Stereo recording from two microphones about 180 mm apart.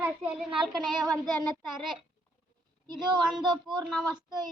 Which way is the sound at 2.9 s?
25° right (ahead or behind).